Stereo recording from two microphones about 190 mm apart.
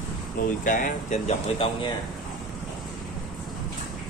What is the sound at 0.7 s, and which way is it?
Speech, 45° left (ahead or behind).